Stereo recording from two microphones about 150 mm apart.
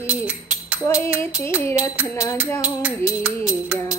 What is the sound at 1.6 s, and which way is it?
Music, 15° left (ahead or behind).